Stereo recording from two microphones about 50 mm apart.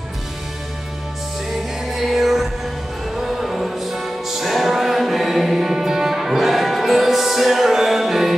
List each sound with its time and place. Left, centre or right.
1.9 s music: centre